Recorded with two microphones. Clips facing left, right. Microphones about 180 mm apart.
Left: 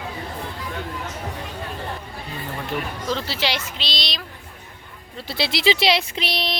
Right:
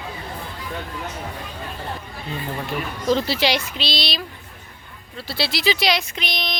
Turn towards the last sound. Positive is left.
turn(degrees=30)  # may be behind; listen again after turning